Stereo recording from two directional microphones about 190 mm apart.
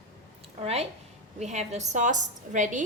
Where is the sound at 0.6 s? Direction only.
35° right (ahead or behind).